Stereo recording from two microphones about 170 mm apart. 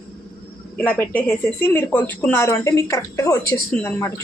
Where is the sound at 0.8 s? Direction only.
10° left (ahead or behind).